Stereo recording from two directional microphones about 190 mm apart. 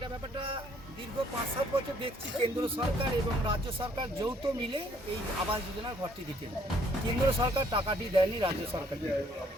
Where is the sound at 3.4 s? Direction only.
25° right (ahead or behind).